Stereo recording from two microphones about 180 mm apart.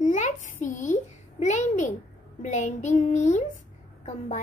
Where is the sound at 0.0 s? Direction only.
45° left (ahead or behind).